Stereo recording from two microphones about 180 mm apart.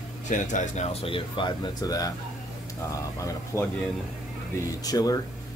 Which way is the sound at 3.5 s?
15° left (ahead or behind).